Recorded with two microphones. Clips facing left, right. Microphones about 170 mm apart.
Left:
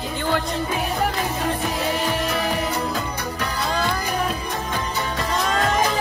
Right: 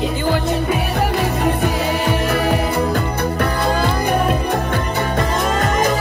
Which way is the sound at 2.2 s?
60° right (ahead or behind).